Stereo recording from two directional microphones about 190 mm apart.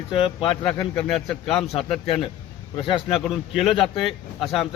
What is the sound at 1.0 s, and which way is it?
Speech, centre (ahead or behind).